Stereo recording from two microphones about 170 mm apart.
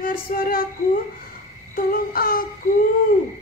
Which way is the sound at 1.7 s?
60° left (ahead or behind).